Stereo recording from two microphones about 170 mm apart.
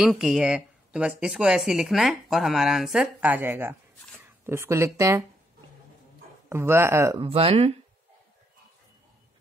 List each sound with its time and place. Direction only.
0.0 s speech: centre (ahead or behind); by 5.2 s 15° right (ahead or behind)
6.5 s speech: 15° right (ahead or behind)
7.2 s speech: 35° right (ahead or behind)